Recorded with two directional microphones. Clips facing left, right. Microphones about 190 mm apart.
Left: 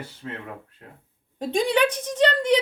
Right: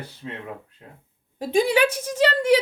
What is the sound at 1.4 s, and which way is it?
A woman's voice, 5° right (ahead or behind).